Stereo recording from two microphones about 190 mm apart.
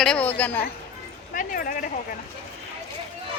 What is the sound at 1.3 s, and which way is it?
Speech, 45° left (ahead or behind).